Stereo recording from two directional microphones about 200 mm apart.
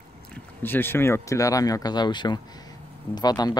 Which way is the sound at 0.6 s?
10° left (ahead or behind).